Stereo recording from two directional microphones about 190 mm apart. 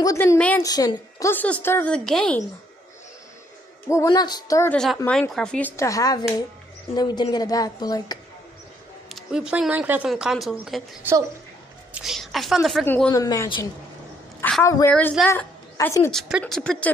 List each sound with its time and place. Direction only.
0.0 s a woman's voice: 15° left (ahead or behind)
3.9 s a woman's voice: 20° left (ahead or behind)
5.8 s a woman's voice: 15° left (ahead or behind)
9.1 s a woman's voice: 5° right (ahead or behind); by 16.1 s 10° left (ahead or behind)
16.1 s speech: centre (ahead or behind)